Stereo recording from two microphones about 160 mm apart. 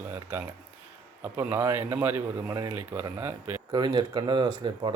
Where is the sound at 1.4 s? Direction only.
15° right (ahead or behind).